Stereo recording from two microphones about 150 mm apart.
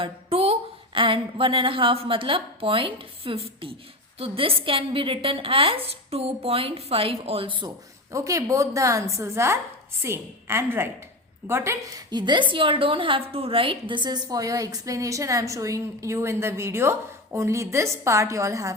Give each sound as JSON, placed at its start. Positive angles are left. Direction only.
{"t": 0.0, "sound": "a woman's voice", "side_deg": -40}
{"t": 8.1, "sound": "a woman's voice", "side_deg": -20}